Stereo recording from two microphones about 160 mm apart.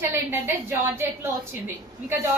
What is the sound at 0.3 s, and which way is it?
A woman's voice, 15° right (ahead or behind).